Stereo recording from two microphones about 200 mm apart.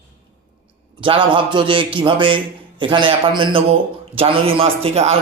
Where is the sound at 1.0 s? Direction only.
25° right (ahead or behind).